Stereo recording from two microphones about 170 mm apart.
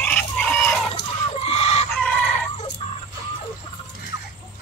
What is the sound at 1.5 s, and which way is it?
Chicken, 35° left (ahead or behind).